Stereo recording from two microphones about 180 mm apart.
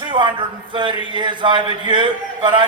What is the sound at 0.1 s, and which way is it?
Speech, 25° right (ahead or behind).